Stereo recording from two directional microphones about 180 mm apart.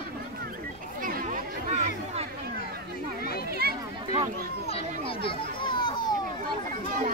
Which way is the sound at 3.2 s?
60° left (ahead or behind).